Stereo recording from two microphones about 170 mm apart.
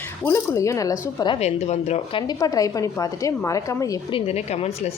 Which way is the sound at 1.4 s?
40° left (ahead or behind).